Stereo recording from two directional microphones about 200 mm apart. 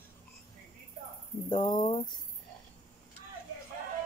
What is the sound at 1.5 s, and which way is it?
Speech, 20° left (ahead or behind).